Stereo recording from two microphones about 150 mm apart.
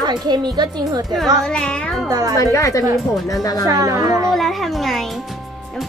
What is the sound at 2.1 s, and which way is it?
Speech, 25° right (ahead or behind).